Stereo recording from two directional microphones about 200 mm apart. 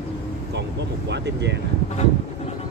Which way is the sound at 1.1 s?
60° right (ahead or behind).